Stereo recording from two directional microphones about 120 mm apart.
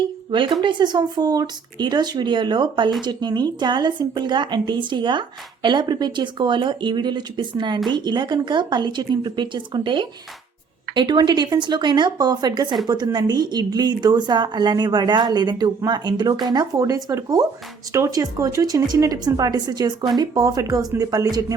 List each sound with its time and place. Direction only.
0.3 s a woman's voice: 45° right (ahead or behind)